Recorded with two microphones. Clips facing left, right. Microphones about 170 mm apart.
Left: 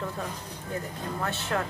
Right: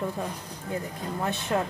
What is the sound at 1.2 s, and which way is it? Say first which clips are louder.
Speech: right 3 dB; 15° right (ahead or behind).